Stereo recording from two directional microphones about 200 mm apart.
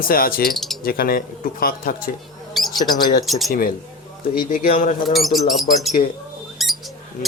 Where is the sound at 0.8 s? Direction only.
50° left (ahead or behind).